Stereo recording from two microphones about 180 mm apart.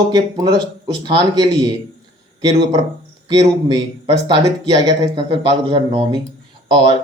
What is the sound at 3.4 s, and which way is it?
Speech, 35° right (ahead or behind).